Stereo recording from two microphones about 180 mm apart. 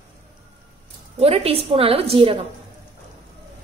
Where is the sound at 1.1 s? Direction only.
35° right (ahead or behind).